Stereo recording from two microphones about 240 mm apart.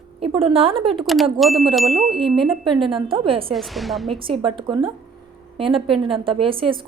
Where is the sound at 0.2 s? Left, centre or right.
Right.